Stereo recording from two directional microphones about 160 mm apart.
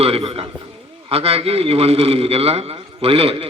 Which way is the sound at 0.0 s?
35° right (ahead or behind).